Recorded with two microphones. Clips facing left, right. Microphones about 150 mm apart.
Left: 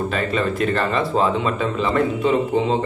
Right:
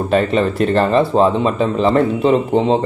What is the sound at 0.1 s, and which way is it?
Speech, 35° right (ahead or behind).